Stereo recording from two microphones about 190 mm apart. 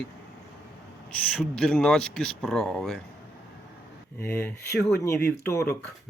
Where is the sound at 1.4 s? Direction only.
5° left (ahead or behind).